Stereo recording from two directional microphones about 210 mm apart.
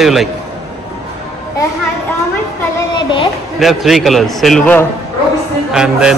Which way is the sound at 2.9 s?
25° left (ahead or behind).